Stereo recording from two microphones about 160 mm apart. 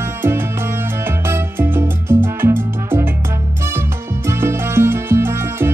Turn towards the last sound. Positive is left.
turn(degrees=-15)  # may be behind; listen again after turning